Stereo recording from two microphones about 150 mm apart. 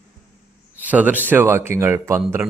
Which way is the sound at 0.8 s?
10° right (ahead or behind).